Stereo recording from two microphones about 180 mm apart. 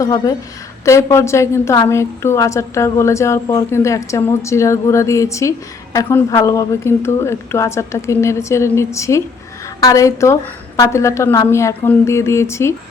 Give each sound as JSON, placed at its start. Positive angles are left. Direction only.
{"t": 0.0, "sound": "a woman's voice", "side_deg": 20}